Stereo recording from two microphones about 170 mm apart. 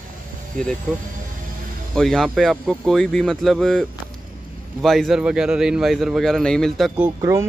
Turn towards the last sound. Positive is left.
turn(degrees=-20)  # may be behind; listen again after turning